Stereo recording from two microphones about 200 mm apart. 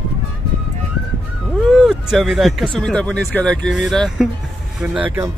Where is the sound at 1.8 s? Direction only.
Centre (ahead or behind).